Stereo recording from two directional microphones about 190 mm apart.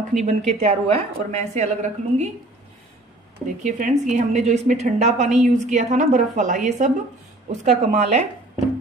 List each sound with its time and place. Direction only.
0.2 s a woman's voice: 40° right (ahead or behind)
3.6 s a woman's voice: 40° right (ahead or behind)